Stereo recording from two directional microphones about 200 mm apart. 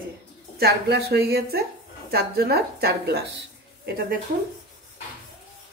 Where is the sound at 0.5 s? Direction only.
55° right (ahead or behind).